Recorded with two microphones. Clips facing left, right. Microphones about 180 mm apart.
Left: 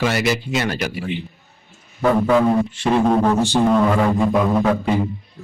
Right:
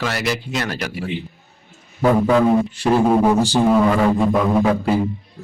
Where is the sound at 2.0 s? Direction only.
5° right (ahead or behind).